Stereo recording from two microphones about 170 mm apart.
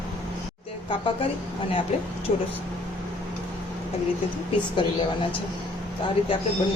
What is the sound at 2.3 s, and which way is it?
Speech, 40° left (ahead or behind).